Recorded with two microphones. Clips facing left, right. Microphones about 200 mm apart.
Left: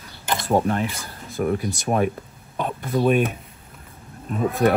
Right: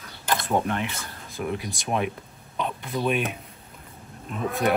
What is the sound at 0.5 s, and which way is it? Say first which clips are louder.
Speech: left 7 dB; 35° left (ahead or behind).